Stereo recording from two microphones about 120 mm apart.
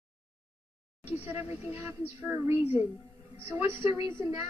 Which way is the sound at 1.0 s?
60° left (ahead or behind).